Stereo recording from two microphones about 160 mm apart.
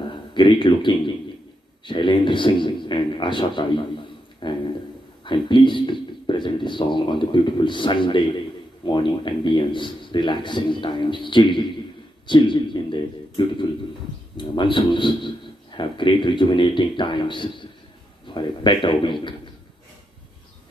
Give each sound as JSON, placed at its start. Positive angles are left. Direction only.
{"t": 0.1, "sound": "a man's voice", "side_deg": 30}